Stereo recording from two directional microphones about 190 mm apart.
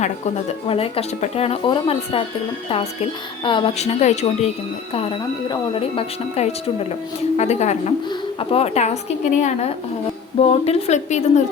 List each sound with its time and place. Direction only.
0.0 s speech: 35° left (ahead or behind)